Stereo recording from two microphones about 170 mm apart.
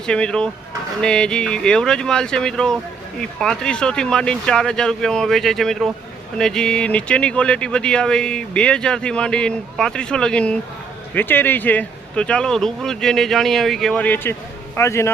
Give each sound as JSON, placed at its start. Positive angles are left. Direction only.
{"t": 0.0, "sound": "speech", "side_deg": 5}